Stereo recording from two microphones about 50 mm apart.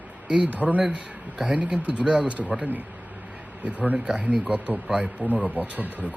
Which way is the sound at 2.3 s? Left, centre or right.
Right.